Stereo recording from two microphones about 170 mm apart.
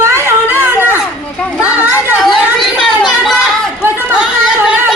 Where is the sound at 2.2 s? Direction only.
Centre (ahead or behind).